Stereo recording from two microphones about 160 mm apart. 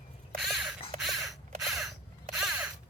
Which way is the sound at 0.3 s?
Centre (ahead or behind).